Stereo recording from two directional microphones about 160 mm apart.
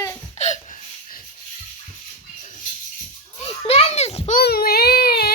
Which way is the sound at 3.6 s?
40° left (ahead or behind).